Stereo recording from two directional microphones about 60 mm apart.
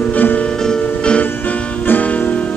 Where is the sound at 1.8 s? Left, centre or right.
Left.